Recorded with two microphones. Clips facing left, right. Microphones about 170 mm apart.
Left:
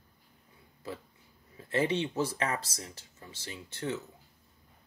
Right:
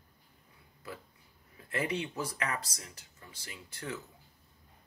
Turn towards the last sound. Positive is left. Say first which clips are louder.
# left 5 dB
turn(degrees=25)  # may be behind; listen again after turning